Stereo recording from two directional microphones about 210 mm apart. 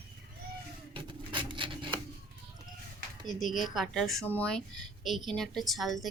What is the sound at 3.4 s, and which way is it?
A woman's voice, centre (ahead or behind).